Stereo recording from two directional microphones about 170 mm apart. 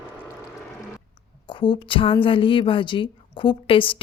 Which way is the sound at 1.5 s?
30° left (ahead or behind).